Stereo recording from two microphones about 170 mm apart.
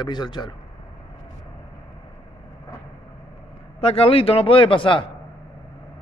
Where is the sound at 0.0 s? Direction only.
25° left (ahead or behind).